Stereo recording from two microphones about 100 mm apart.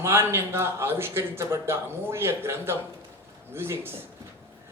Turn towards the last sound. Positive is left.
turn(degrees=-25)  # may be behind; listen again after turning